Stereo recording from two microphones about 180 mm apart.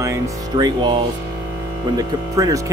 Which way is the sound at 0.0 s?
20° right (ahead or behind).